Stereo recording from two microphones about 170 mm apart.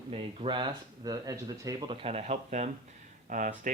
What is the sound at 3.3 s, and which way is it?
Speech, 50° right (ahead or behind).